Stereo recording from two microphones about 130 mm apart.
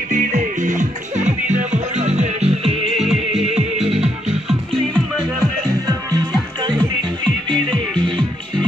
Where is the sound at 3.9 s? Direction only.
50° right (ahead or behind).